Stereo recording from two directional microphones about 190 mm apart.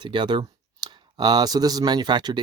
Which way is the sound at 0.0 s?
25° right (ahead or behind).